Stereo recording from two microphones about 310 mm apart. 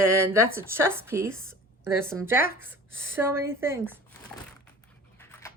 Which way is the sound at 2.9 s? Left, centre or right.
Right.